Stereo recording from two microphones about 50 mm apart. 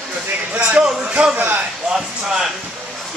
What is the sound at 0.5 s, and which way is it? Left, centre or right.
Speech, right.